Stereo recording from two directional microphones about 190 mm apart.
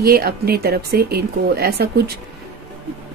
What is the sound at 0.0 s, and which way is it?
Speech, 55° right (ahead or behind).